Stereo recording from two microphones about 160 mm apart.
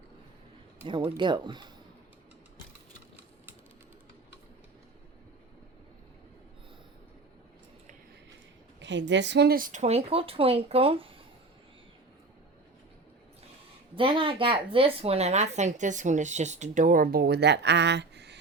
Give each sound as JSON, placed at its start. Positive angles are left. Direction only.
{"t": 0.9, "sound": "speech", "side_deg": -30}
{"t": 9.0, "sound": "speech", "side_deg": -90}
{"t": 9.8, "sound": "speech", "side_deg": -40}
{"t": 13.9, "sound": "speech", "side_deg": -35}